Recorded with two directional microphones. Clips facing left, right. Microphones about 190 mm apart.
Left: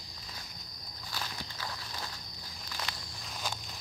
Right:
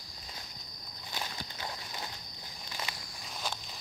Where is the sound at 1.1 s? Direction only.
20° right (ahead or behind).